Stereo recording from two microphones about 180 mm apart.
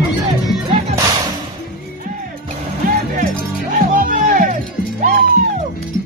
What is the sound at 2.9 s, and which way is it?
Music, 50° right (ahead or behind).